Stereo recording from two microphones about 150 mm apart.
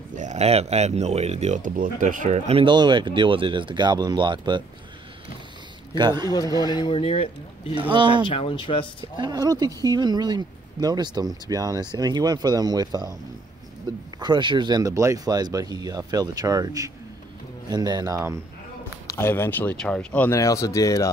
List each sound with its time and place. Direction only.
0.1 s speech: 50° right (ahead or behind)
2.6 s speech: 30° right (ahead or behind)
5.9 s speech: 30° right (ahead or behind)
6.7 s speech: 35° left (ahead or behind)
7.9 s speech: 30° right (ahead or behind)
8.3 s speech: 35° left (ahead or behind)
9.1 s speech: 30° right (ahead or behind)
14.2 s speech: 30° right (ahead or behind)
19.0 s speech: 15° left (ahead or behind)
20.3 s speech: 20° left (ahead or behind)